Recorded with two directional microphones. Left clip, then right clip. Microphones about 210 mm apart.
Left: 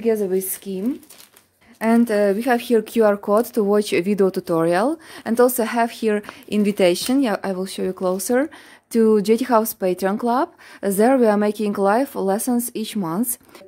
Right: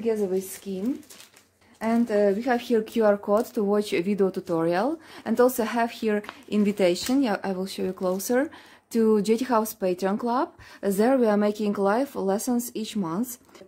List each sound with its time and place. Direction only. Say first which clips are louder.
0.0 s speech: left 6 dB; 50° left (ahead or behind)
1.8 s speech: left 5 dB; 50° left (ahead or behind); by 13.2 s 30° left (ahead or behind)